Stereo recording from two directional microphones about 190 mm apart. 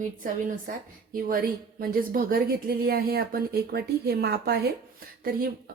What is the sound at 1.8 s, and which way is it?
Speech, 50° right (ahead or behind).